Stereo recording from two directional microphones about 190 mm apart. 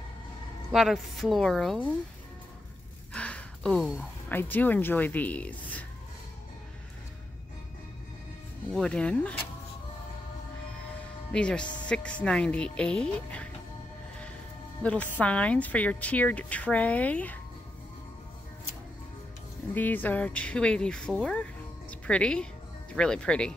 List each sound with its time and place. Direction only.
0.7 s speech: centre (ahead or behind)
3.1 s a sound: 5° left (ahead or behind)
4.3 s speech: 10° left (ahead or behind)
8.7 s speech: 5° left (ahead or behind)
11.3 s speech: 5° left (ahead or behind)
14.8 s speech: 5° left (ahead or behind)
19.7 s speech: 10° left (ahead or behind)